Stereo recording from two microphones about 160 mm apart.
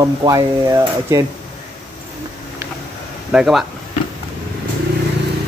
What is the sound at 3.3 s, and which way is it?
Speech, 5° right (ahead or behind).